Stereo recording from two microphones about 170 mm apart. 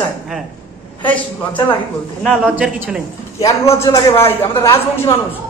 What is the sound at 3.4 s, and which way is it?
A woman's voice, 15° left (ahead or behind).